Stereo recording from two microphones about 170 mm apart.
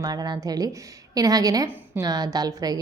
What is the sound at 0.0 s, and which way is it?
A woman's voice, 25° right (ahead or behind).